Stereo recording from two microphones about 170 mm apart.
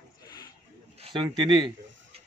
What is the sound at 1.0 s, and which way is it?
Speech, 30° right (ahead or behind).